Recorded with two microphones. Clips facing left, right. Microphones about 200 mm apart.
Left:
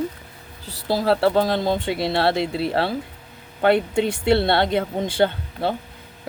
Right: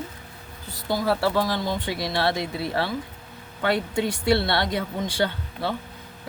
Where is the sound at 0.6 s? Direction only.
30° left (ahead or behind).